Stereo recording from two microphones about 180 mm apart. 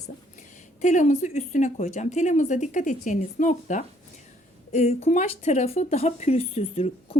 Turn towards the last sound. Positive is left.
turn(degrees=35)  # may be behind; listen again after turning